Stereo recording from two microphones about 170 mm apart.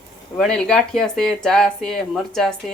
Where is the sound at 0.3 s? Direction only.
5° left (ahead or behind).